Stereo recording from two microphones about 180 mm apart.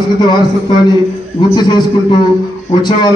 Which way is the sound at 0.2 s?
25° left (ahead or behind).